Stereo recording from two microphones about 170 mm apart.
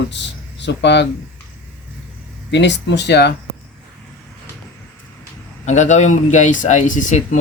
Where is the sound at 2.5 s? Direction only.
90° left.